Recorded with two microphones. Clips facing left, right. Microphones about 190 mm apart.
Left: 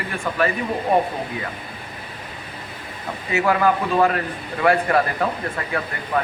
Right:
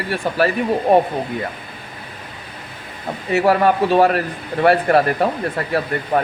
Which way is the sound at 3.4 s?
30° right (ahead or behind).